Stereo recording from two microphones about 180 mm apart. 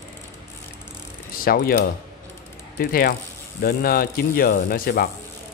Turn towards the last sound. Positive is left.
turn(degrees=55)  # may be behind; listen again after turning